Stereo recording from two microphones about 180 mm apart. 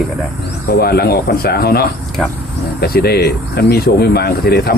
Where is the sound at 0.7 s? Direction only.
60° left (ahead or behind).